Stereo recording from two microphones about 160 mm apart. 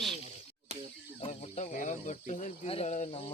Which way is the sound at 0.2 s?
45° right (ahead or behind).